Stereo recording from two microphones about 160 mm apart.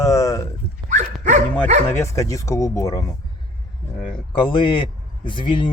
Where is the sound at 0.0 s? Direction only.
20° left (ahead or behind).